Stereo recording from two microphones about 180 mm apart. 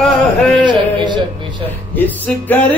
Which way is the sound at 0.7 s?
25° right (ahead or behind).